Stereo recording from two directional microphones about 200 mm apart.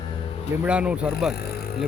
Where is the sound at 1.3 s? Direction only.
55° left (ahead or behind).